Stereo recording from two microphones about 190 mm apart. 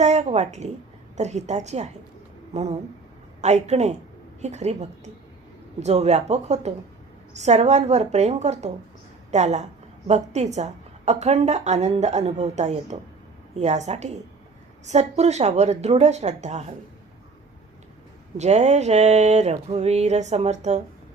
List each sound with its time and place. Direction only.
0.0 s a woman's voice: 35° right (ahead or behind)
18.3 s a woman's voice: 35° right (ahead or behind)